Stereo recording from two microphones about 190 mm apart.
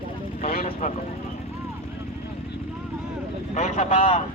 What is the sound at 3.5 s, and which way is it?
Speech, 35° left (ahead or behind).